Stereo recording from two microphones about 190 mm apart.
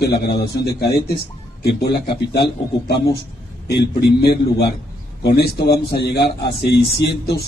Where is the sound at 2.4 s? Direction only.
60° left (ahead or behind).